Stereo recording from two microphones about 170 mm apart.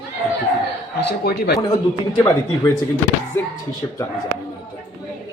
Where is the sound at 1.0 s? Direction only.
70° left (ahead or behind).